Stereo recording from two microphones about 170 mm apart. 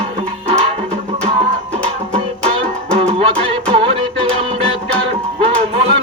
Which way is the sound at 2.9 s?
35° right (ahead or behind).